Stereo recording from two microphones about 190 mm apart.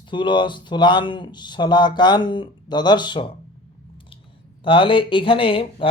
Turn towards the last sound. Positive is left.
turn(degrees=30)  # may be behind; listen again after turning